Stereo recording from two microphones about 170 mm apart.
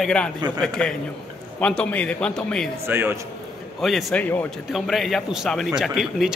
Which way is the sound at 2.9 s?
15° right (ahead or behind).